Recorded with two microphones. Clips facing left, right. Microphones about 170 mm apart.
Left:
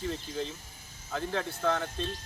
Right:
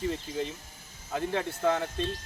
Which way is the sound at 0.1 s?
15° right (ahead or behind).